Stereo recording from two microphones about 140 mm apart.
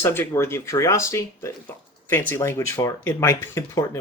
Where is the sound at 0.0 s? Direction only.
15° left (ahead or behind).